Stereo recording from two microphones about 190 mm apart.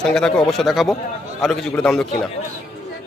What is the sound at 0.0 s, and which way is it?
Speech, 5° left (ahead or behind).